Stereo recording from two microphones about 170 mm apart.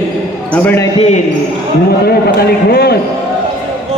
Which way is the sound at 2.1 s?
65° left (ahead or behind).